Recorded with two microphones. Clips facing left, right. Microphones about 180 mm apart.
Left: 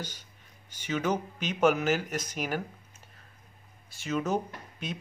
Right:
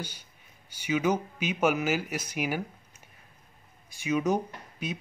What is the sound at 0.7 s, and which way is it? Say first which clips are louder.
Speech: right 3 dB; 10° right (ahead or behind).